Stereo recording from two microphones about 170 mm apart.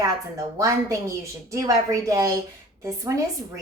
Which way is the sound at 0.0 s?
20° right (ahead or behind).